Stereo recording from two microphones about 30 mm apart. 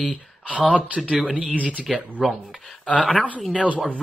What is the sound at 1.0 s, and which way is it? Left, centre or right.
Speech, right.